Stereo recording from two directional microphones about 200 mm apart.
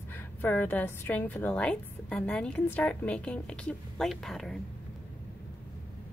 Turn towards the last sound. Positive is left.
turn(degrees=0)  # may be behind; listen again after turning